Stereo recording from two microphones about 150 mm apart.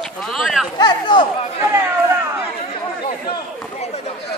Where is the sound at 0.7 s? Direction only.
30° left (ahead or behind).